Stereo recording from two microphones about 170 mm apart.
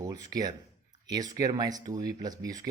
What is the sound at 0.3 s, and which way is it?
Speech, 20° right (ahead or behind).